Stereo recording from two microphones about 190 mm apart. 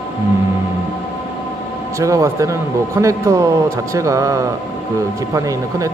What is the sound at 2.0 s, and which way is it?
A man's voice, 15° right (ahead or behind).